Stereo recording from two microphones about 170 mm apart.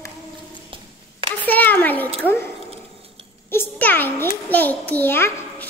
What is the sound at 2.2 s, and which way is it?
Speech, 15° left (ahead or behind).